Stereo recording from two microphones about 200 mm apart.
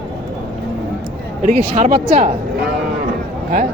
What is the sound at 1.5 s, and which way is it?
Speech, 40° right (ahead or behind).